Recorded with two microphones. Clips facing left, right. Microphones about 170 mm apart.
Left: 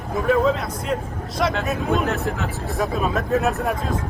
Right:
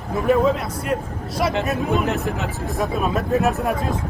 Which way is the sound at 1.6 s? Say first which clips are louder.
Right 1 dB; 10° right (ahead or behind).